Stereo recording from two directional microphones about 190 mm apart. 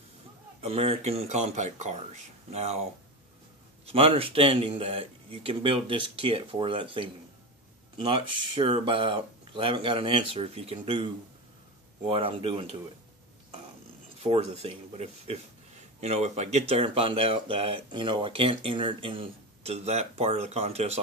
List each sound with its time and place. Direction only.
0.6 s speech: 35° right (ahead or behind)
3.8 s speech: 30° right (ahead or behind)
12.1 s speech: 30° right (ahead or behind)
14.2 s speech: 30° right (ahead or behind)